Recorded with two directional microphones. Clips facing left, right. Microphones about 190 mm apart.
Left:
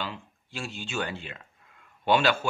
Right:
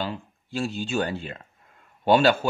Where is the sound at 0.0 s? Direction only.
35° right (ahead or behind).